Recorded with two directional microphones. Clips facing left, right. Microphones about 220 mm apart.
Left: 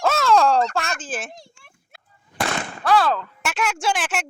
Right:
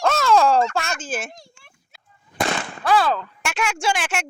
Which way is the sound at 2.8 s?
Centre (ahead or behind).